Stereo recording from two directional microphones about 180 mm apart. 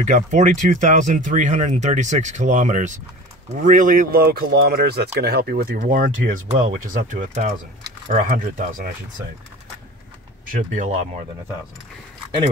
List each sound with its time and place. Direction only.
0.0 s speech: 45° right (ahead or behind)
10.5 s speech: 45° right (ahead or behind)